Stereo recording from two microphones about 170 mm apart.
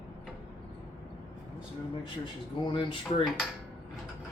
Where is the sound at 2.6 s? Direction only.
30° left (ahead or behind).